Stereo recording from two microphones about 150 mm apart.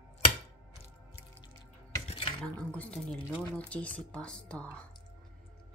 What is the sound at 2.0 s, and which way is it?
Dishes, 35° left (ahead or behind).